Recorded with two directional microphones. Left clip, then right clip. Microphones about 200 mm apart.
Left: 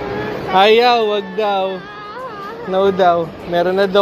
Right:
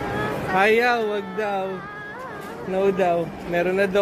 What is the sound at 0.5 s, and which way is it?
Speech, 20° left (ahead or behind).